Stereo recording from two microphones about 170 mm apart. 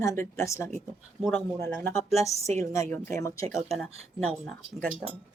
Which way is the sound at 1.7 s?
15° left (ahead or behind).